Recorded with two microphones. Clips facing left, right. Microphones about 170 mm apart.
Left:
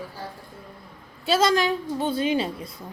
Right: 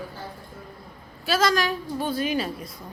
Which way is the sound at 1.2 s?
25° left (ahead or behind).